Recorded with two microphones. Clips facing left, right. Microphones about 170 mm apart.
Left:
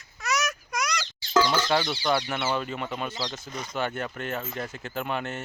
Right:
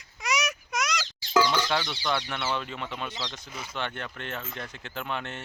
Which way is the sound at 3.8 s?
5° left (ahead or behind).